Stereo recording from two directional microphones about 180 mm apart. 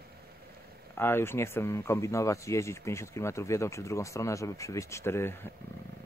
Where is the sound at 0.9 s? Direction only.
15° left (ahead or behind).